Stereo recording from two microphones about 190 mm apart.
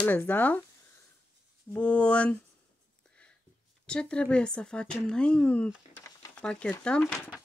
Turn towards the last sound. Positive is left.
turn(degrees=5)  # may be behind; listen again after turning